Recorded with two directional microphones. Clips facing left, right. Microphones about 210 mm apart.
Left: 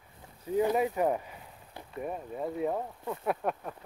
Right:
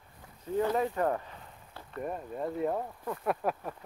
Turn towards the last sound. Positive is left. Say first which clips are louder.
# even
turn(degrees=0)  # may be behind; listen again after turning